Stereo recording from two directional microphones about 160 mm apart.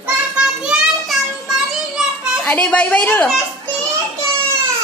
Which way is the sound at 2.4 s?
10° left (ahead or behind).